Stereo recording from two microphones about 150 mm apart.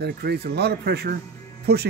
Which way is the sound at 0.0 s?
90° right.